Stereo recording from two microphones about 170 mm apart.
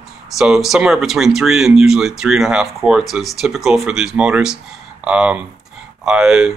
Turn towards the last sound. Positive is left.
turn(degrees=-5)  # may be behind; listen again after turning